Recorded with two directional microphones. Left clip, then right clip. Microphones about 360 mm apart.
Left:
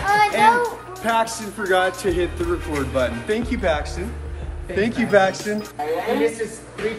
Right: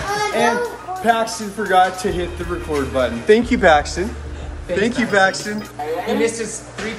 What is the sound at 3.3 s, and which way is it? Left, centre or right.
Speech, centre.